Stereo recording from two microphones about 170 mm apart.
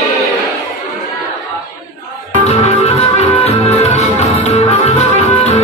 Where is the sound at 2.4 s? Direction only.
40° left (ahead or behind).